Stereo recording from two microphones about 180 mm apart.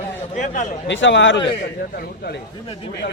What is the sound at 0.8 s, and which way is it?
Speech, 90° left.